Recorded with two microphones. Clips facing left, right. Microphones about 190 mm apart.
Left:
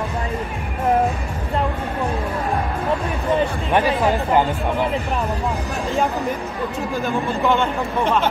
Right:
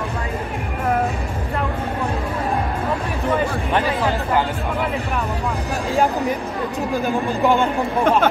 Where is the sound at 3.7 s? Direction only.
15° left (ahead or behind).